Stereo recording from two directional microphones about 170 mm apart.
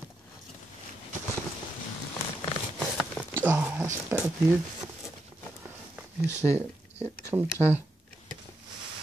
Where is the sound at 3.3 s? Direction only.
10° right (ahead or behind).